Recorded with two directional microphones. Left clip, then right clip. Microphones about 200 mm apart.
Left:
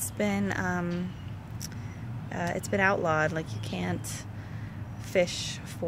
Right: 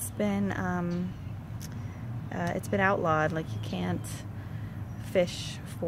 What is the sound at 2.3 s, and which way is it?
Speech, 5° right (ahead or behind).